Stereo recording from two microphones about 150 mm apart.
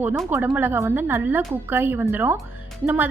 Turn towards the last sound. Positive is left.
turn(degrees=-15)  # may be behind; listen again after turning